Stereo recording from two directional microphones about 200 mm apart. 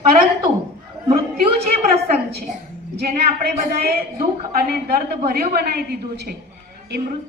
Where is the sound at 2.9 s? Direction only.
55° right (ahead or behind).